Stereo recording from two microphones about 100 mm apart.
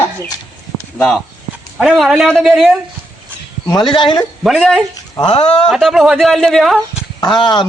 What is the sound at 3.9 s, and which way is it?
Speech, 60° left (ahead or behind).